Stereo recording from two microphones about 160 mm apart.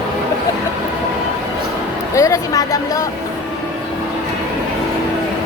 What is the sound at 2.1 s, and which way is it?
Speech, 20° left (ahead or behind).